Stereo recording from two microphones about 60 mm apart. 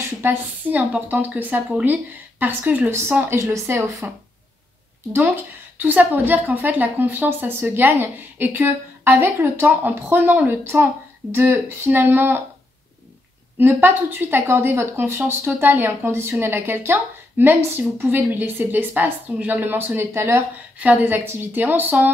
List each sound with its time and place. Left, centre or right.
0.0 s a woman's voice: right
1.0 s a woman's voice: right
2.9 s speech: right
3.3 s speech: right
5.8 s speech: right
10.6 s speech: right
13.6 s speech: right
20.2 s speech: right
21.0 s speech: right